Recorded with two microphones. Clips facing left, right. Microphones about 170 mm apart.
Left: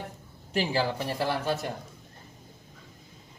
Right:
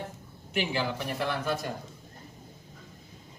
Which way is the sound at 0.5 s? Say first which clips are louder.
Left 3 dB; 35° left (ahead or behind).